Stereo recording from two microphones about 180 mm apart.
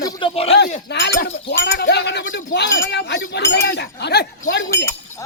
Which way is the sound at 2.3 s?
80° left.